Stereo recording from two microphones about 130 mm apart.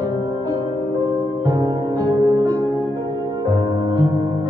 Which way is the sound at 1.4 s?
30° right (ahead or behind).